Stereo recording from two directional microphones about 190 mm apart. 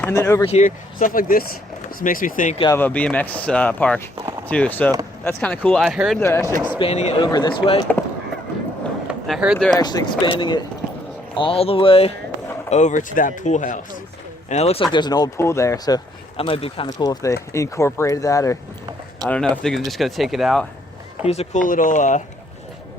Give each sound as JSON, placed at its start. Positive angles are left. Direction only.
{"t": 0.0, "sound": "speech", "side_deg": 15}
{"t": 0.4, "sound": "speech", "side_deg": 40}
{"t": 2.7, "sound": "speech", "side_deg": 10}
{"t": 6.1, "sound": "speech", "side_deg": 15}
{"t": 6.7, "sound": "speech", "side_deg": 30}
{"t": 7.2, "sound": "speech", "side_deg": 20}
{"t": 9.0, "sound": "vehicle", "side_deg": -5}
{"t": 9.7, "sound": "speech", "side_deg": 20}
{"t": 14.9, "sound": "speech", "side_deg": 20}
{"t": 16.4, "sound": "speech", "side_deg": 30}
{"t": 19.2, "sound": "speech", "side_deg": 5}
{"t": 21.2, "sound": "speech", "side_deg": 35}